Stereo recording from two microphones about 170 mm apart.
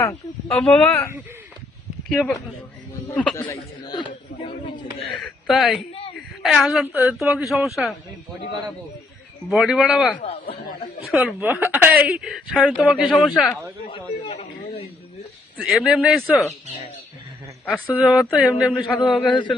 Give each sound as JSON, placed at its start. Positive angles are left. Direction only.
{"t": 0.0, "sound": "speech", "side_deg": 20}
{"t": 0.5, "sound": "speech", "side_deg": 5}
{"t": 2.0, "sound": "speech", "side_deg": 5}
{"t": 3.5, "sound": "a man's voice", "side_deg": 25}
{"t": 5.2, "sound": "a woman's voice", "side_deg": 0}
{"t": 6.8, "sound": "speech", "side_deg": -10}
{"t": 7.2, "sound": "speech", "side_deg": 0}
{"t": 9.5, "sound": "speech", "side_deg": 0}
{"t": 10.2, "sound": "speech", "side_deg": 35}
{"t": 11.0, "sound": "speech", "side_deg": -5}
{"t": 13.9, "sound": "a sound", "side_deg": 40}
{"t": 15.5, "sound": "speech", "side_deg": 0}
{"t": 17.8, "sound": "speech", "side_deg": -5}
{"t": 19.3, "sound": "a man's voice", "side_deg": 25}